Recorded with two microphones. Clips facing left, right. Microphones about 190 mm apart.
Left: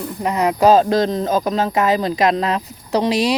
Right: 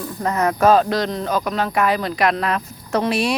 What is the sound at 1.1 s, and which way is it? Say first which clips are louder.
Speech: left 4 dB; 40° left (ahead or behind).